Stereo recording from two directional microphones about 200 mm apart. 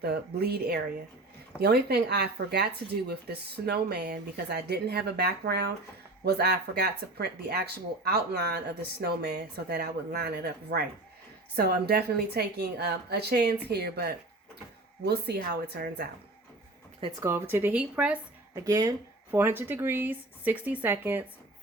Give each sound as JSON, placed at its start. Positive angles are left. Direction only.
{"t": 0.0, "sound": "speech", "side_deg": -50}
{"t": 17.0, "sound": "speech", "side_deg": -15}
{"t": 18.6, "sound": "speech", "side_deg": -15}